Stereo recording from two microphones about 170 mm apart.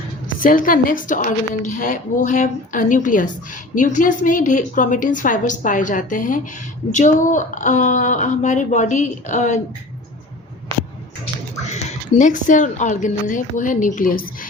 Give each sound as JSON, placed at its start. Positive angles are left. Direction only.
{"t": 0.3, "sound": "a woman's voice", "side_deg": 50}
{"t": 11.7, "sound": "a woman's voice", "side_deg": 45}